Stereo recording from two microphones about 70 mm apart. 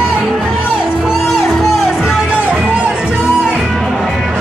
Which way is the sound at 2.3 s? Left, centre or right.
Right.